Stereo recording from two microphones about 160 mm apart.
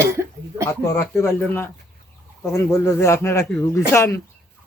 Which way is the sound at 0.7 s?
15° left (ahead or behind).